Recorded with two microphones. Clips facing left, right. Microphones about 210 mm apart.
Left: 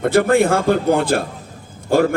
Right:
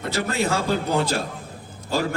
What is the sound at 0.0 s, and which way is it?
A man's voice, 55° left (ahead or behind).